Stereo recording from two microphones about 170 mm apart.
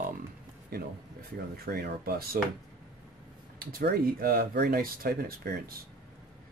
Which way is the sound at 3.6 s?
60° right (ahead or behind).